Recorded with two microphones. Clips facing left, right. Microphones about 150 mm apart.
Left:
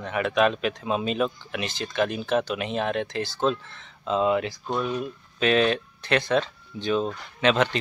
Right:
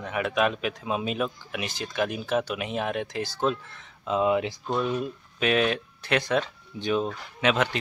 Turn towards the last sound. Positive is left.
turn(degrees=-5)  # may be behind; listen again after turning